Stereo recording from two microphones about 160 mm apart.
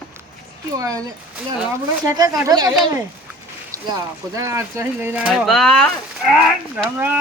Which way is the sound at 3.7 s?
20° right (ahead or behind).